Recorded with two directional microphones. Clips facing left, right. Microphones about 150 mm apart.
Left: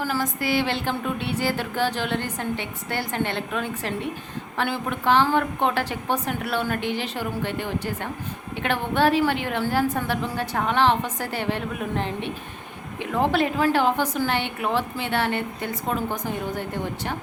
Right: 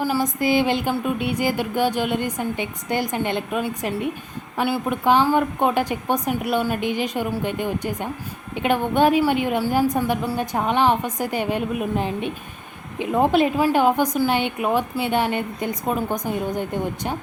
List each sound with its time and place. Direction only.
0.0 s a woman's voice: 15° right (ahead or behind)